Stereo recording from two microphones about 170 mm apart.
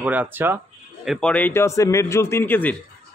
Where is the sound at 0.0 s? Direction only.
10° right (ahead or behind).